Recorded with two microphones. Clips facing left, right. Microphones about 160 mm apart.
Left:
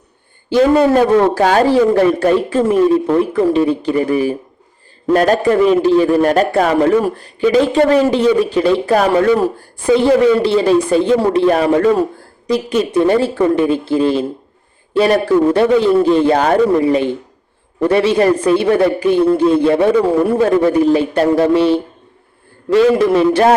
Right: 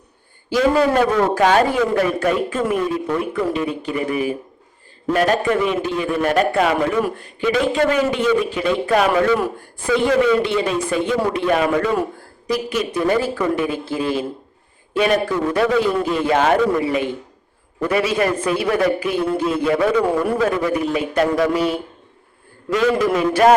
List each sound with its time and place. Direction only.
0.5 s a man's voice: 30° left (ahead or behind)